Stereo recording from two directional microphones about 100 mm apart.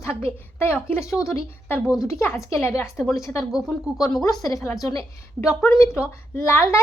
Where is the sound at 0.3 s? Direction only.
25° left (ahead or behind).